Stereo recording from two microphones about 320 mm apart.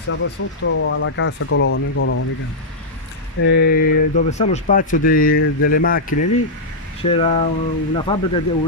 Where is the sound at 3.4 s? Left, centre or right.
Left.